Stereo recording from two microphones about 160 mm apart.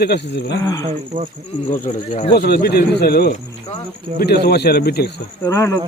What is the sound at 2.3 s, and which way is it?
Speech, 75° left (ahead or behind).